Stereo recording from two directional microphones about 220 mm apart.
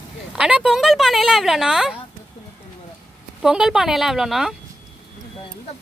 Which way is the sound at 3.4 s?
5° right (ahead or behind).